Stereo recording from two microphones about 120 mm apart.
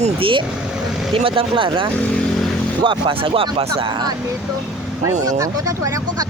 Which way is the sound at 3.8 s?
35° right (ahead or behind).